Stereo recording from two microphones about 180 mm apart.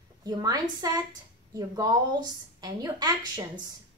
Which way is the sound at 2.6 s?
20° right (ahead or behind).